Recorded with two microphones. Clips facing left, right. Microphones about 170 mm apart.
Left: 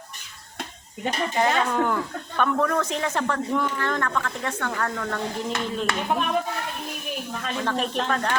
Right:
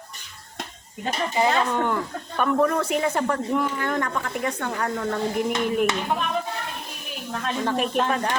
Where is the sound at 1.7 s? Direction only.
Centre (ahead or behind).